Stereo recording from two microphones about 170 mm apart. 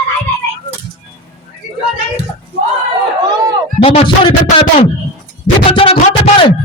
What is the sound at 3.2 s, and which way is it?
Run, 20° right (ahead or behind).